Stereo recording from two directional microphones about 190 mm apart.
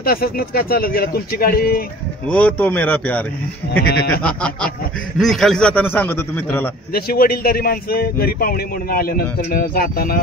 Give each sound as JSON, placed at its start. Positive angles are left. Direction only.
{"t": 0.0, "sound": "a man's voice", "side_deg": 50}
{"t": 2.2, "sound": "a man's voice", "side_deg": 5}
{"t": 3.8, "sound": "goat", "side_deg": 60}
{"t": 4.2, "sound": "a sound", "side_deg": 5}
{"t": 5.2, "sound": "a man's voice", "side_deg": 0}
{"t": 6.9, "sound": "a man's voice", "side_deg": 50}